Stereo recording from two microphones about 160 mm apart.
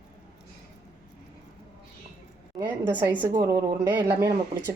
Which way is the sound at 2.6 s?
10° right (ahead or behind).